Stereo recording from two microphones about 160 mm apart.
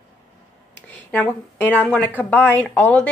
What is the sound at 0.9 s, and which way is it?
Speech, 10° left (ahead or behind).